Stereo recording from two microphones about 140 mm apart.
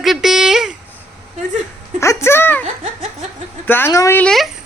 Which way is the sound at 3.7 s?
20° left (ahead or behind).